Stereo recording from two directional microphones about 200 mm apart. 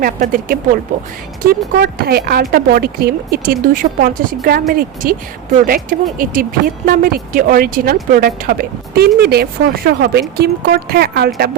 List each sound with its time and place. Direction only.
0.0 s speech: 45° right (ahead or behind)